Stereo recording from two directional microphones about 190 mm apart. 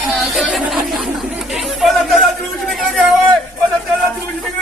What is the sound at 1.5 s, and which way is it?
Chatter, centre (ahead or behind).